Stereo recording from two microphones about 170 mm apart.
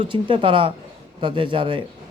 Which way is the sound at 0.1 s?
30° right (ahead or behind).